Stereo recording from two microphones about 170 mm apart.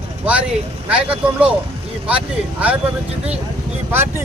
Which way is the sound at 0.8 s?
5° right (ahead or behind).